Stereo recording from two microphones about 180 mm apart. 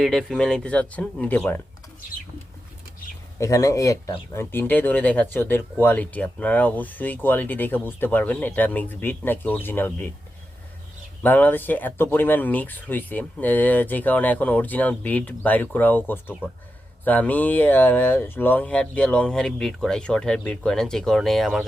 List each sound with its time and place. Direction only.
0.0 s speech: centre (ahead or behind)
3.4 s speech: 15° left (ahead or behind)
11.2 s speech: 10° left (ahead or behind)